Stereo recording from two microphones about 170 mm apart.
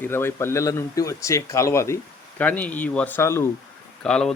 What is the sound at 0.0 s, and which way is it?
Speech, 15° left (ahead or behind).